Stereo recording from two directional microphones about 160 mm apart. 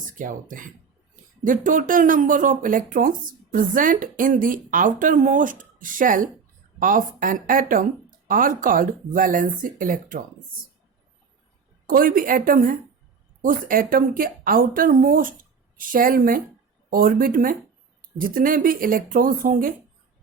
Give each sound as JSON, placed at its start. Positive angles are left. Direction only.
{"t": 0.0, "sound": "speech", "side_deg": -55}
{"t": 11.9, "sound": "speech", "side_deg": -60}